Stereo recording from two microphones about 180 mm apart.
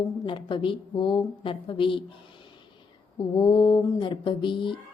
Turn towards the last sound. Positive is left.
turn(degrees=25)  # may be behind; listen again after turning